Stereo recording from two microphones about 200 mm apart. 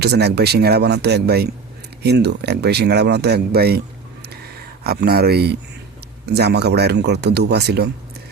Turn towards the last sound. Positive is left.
turn(degrees=-55)  # may be behind; listen again after turning